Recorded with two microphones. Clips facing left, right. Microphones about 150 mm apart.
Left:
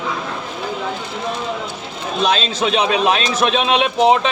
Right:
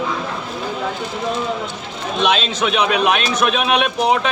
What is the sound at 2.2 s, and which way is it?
A man's voice, 35° left (ahead or behind).